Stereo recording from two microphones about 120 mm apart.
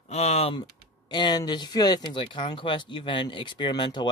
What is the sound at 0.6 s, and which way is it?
Speech, 40° left (ahead or behind).